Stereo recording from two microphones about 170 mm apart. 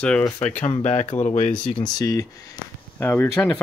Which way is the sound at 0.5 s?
40° left (ahead or behind).